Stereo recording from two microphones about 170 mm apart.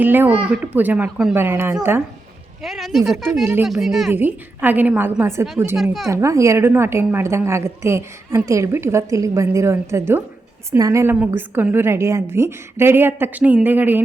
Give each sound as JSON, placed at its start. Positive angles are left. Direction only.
{"t": 0.0, "sound": "a woman's voice", "side_deg": -10}
{"t": 2.6, "sound": "speech", "side_deg": 0}
{"t": 3.4, "sound": "a woman's voice", "side_deg": -15}
{"t": 3.7, "sound": "speech", "side_deg": 0}
{"t": 4.1, "sound": "a woman's voice", "side_deg": -10}
{"t": 5.7, "sound": "speech", "side_deg": 0}
{"t": 6.1, "sound": "a woman's voice", "side_deg": -20}